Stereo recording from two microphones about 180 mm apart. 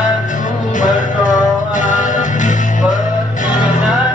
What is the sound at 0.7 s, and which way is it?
Music, 45° left (ahead or behind).